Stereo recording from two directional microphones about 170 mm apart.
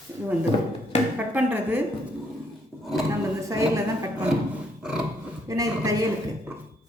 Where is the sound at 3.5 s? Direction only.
20° right (ahead or behind).